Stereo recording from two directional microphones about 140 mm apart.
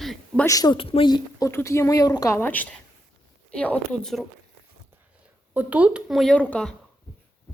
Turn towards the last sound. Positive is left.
turn(degrees=10)  # may be behind; listen again after turning